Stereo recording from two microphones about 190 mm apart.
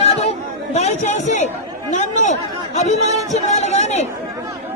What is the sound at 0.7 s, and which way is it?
Speech, 35° left (ahead or behind).